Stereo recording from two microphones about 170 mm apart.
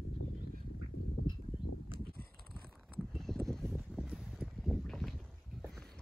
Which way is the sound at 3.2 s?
Centre (ahead or behind).